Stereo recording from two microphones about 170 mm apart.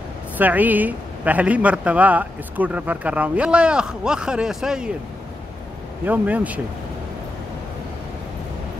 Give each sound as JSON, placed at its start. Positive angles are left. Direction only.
{"t": 0.4, "sound": "speech", "side_deg": -10}
{"t": 6.0, "sound": "speech", "side_deg": -10}